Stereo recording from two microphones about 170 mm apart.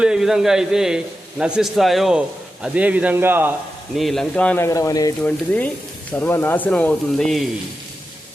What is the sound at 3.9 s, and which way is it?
Speech, centre (ahead or behind).